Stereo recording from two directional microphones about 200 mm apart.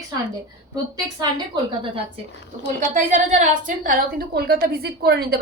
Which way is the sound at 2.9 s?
40° right (ahead or behind).